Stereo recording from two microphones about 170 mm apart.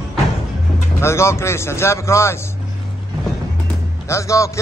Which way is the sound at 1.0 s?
15° left (ahead or behind).